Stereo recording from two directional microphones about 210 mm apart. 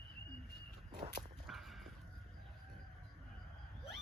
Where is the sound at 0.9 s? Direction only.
20° right (ahead or behind).